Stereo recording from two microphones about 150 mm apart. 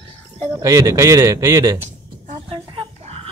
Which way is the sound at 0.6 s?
20° right (ahead or behind).